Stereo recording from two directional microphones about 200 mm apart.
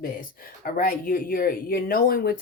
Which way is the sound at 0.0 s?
45° left (ahead or behind).